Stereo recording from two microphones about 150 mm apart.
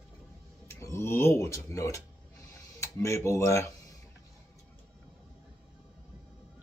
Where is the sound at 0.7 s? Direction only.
15° left (ahead or behind).